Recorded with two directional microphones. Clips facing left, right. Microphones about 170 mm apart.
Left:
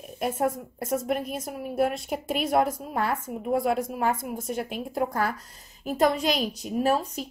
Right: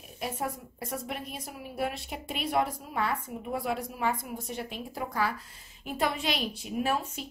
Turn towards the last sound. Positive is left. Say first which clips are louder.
# left 5 dB
turn(degrees=40)  # may be behind; listen again after turning